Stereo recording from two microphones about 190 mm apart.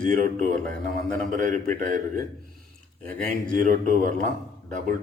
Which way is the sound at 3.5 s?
45° right (ahead or behind).